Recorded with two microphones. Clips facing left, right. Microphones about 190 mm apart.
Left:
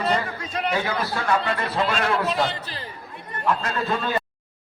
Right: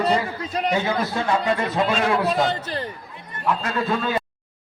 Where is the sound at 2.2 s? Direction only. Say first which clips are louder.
Right 3 dB; 45° right (ahead or behind).